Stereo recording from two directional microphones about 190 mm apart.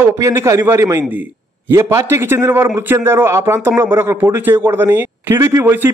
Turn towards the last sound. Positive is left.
turn(degrees=-10)  # may be behind; listen again after turning